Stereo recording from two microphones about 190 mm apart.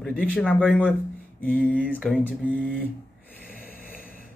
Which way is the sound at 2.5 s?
10° left (ahead or behind).